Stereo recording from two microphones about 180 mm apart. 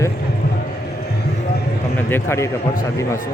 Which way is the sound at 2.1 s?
15° left (ahead or behind).